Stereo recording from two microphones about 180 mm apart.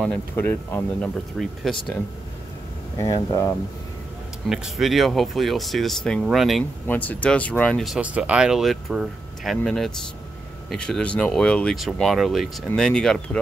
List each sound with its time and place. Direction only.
0.0 s speech: 10° left (ahead or behind)
1.4 s speech: centre (ahead or behind)
3.0 s speech: 20° left (ahead or behind)
4.5 s speech: centre (ahead or behind)